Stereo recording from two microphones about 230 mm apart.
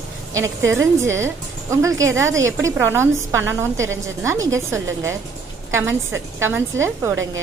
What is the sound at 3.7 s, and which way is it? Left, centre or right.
Speech, right.